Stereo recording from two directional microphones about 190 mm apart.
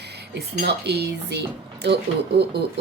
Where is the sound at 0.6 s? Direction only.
60° right (ahead or behind).